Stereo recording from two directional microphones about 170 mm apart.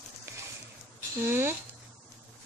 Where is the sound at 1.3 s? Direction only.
15° right (ahead or behind).